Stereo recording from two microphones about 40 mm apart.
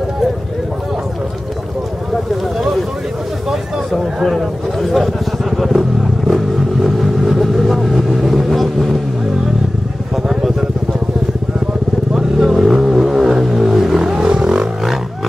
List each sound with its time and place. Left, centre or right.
3.4 s a sound: centre
10.1 s vehicle: centre
12.1 s vehicle: centre
14.2 s music: right